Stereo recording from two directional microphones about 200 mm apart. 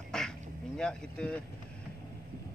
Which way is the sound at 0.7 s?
5° left (ahead or behind).